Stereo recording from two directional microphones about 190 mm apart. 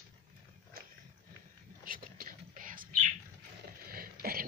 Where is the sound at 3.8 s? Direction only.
50° right (ahead or behind).